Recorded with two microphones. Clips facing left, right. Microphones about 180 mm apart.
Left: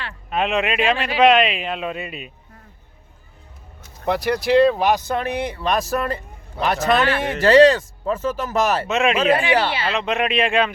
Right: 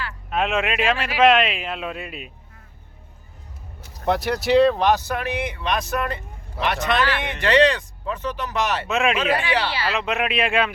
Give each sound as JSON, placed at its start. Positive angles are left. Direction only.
{"t": 0.3, "sound": "a man's voice", "side_deg": 0}
{"t": 4.0, "sound": "a man's voice", "side_deg": 0}
{"t": 5.0, "sound": "speech", "side_deg": 30}
{"t": 8.9, "sound": "a man's voice", "side_deg": 0}
{"t": 9.3, "sound": "speech", "side_deg": 25}
{"t": 9.9, "sound": "a man's voice", "side_deg": 0}